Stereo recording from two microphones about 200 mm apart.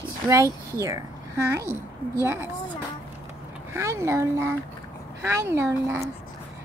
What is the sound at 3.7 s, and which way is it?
Speech, 15° right (ahead or behind).